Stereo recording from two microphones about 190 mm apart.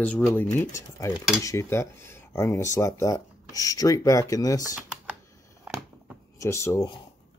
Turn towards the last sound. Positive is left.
turn(degrees=15)  # may be behind; listen again after turning